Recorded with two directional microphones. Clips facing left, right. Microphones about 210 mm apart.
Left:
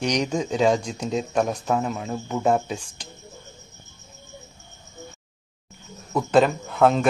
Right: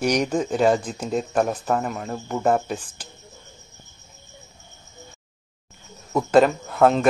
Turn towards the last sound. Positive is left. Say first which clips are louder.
# right 1 dB
turn(degrees=0)  # may be behind; listen again after turning